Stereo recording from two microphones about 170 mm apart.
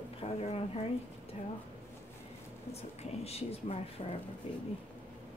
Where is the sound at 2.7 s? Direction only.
40° left (ahead or behind).